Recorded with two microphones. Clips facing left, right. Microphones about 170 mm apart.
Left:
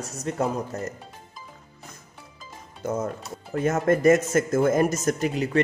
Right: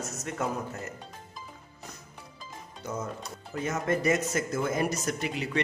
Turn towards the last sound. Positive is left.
turn(degrees=45)  # may be behind; listen again after turning